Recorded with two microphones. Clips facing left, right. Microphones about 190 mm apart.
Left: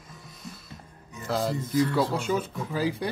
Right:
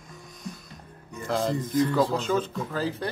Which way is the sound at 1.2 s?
5° left (ahead or behind).